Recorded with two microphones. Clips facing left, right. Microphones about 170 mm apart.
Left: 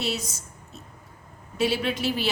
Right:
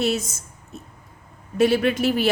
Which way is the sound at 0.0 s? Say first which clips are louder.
Right 7 dB; 50° right (ahead or behind).